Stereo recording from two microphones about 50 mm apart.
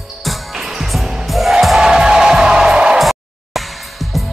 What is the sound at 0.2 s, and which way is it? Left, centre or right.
Music, centre.